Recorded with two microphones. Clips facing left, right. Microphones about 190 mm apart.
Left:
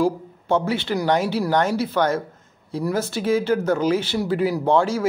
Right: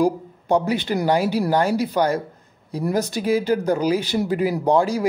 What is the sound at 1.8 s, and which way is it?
Speech, 15° right (ahead or behind).